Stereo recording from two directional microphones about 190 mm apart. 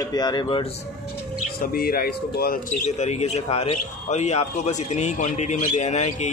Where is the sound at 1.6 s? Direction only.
50° left (ahead or behind).